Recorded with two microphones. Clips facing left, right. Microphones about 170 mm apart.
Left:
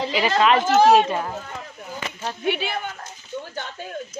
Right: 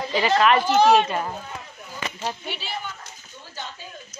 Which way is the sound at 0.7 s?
5° left (ahead or behind).